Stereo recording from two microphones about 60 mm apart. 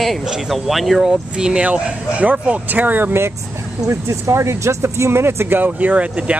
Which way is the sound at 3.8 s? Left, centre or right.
Right.